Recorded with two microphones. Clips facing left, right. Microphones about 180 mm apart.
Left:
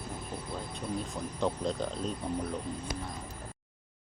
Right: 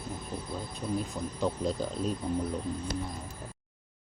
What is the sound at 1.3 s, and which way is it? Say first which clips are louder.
Speech: right 1 dB; 5° right (ahead or behind).